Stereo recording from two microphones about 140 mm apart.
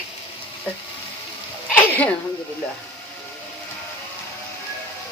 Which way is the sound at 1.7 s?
10° left (ahead or behind).